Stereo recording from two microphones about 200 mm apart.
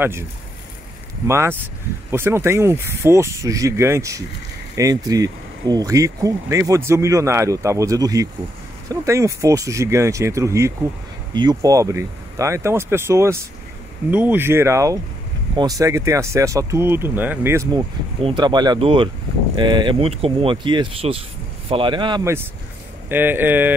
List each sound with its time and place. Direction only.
1.2 s speech: 15° right (ahead or behind)